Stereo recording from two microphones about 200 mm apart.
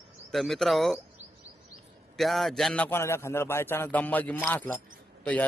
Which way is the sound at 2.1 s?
Centre (ahead or behind).